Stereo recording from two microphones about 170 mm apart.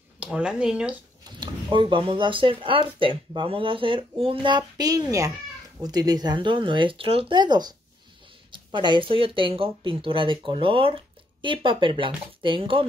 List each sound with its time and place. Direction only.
0.2 s speech: 5° right (ahead or behind)
1.4 s speech: 30° right (ahead or behind)